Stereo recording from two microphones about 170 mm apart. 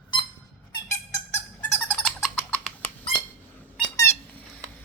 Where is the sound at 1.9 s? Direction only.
5° left (ahead or behind).